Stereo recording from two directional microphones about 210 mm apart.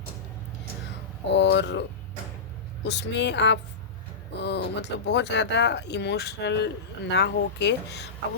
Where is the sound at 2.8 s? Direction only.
55° left (ahead or behind).